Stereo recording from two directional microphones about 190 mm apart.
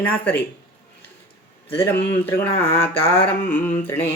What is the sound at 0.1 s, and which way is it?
Speech, 10° left (ahead or behind).